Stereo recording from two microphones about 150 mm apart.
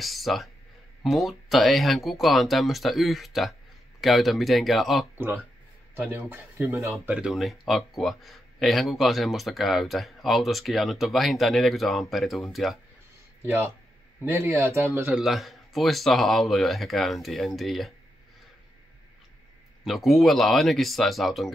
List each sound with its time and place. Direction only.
0.0 s speech: centre (ahead or behind)
5.1 s speech: 15° right (ahead or behind)
14.2 s speech: 15° right (ahead or behind)
15.0 s speech: centre (ahead or behind)
19.8 s speech: centre (ahead or behind)